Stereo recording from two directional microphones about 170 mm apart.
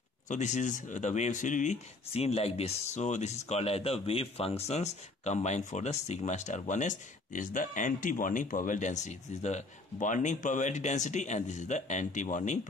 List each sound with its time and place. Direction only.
0.3 s speech: 45° left (ahead or behind)